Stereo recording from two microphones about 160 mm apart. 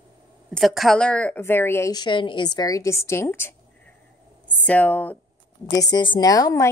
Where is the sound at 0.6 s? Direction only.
Centre (ahead or behind).